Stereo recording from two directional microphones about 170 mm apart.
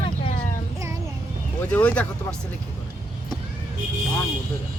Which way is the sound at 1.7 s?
10° left (ahead or behind).